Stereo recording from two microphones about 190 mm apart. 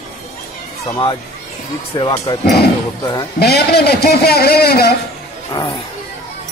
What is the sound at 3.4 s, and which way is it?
A man's voice, 55° left (ahead or behind).